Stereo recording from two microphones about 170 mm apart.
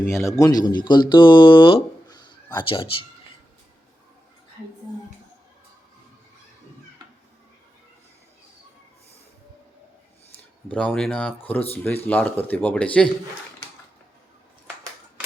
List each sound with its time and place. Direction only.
0.1 s speech: 15° left (ahead or behind)
10.7 s speech: 5° left (ahead or behind)